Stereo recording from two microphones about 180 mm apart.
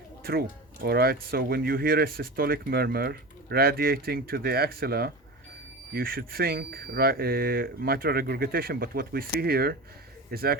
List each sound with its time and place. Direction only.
0.2 s speech: 55° right (ahead or behind)